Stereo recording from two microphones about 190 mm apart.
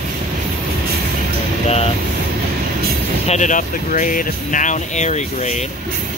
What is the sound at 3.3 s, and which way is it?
Speech, 40° left (ahead or behind).